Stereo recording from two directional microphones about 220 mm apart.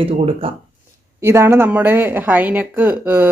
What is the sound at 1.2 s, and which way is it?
Speech, 10° right (ahead or behind).